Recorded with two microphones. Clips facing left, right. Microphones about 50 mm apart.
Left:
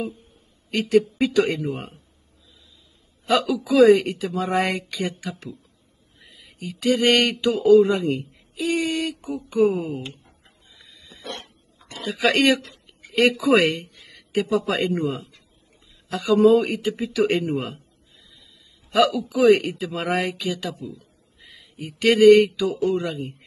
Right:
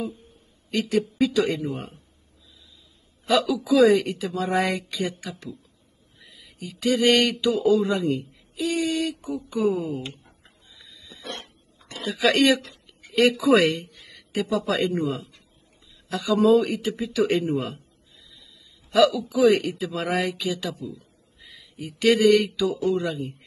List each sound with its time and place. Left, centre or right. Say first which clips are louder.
0.7 s speech: left 5 dB; left
3.3 s speech: even; left
10.8 s pig: left 1 dB; left
12.1 s speech: left 1 dB; left
18.9 s speech: even; left
21.4 s a sound: left 1 dB; left
22.8 s speech: even; left